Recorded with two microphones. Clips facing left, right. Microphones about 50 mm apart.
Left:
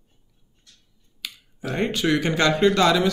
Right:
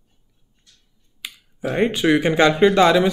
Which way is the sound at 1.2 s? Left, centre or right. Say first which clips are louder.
Right 5 dB; centre.